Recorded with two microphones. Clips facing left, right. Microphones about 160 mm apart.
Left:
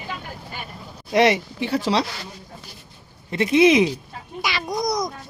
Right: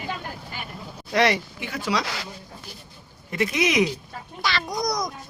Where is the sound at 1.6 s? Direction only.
35° left (ahead or behind).